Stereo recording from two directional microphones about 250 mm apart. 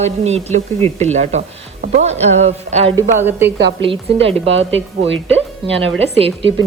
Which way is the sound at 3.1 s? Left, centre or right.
Centre.